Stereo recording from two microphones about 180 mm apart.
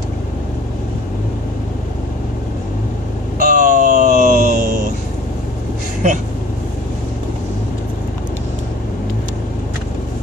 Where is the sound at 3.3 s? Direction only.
50° right (ahead or behind).